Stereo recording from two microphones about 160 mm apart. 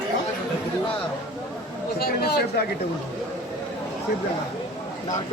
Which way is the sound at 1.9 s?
75° left (ahead or behind).